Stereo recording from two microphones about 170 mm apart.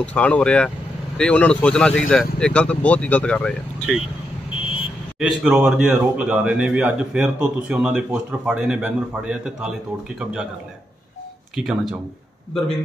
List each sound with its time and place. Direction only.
0.0 s speech: 10° left (ahead or behind)
4.6 s vehicle: 30° left (ahead or behind)
5.2 s a man's voice: 5° right (ahead or behind)
11.5 s a man's voice: centre (ahead or behind)